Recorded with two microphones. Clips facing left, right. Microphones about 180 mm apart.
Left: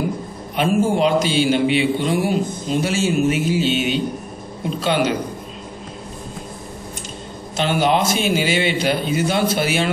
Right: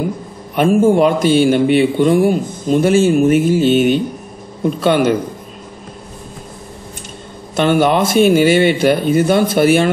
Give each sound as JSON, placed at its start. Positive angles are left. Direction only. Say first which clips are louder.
{"t": 0.6, "sound": "a man's voice", "louder": "right 6 dB", "side_deg": -55}
{"t": 7.5, "sound": "a man's voice", "louder": "right 5 dB", "side_deg": -55}